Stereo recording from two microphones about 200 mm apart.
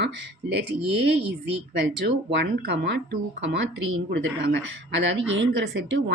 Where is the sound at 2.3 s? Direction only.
60° right (ahead or behind).